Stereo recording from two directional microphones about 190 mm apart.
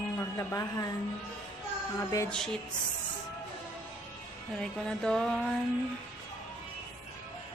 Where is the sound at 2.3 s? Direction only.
5° left (ahead or behind).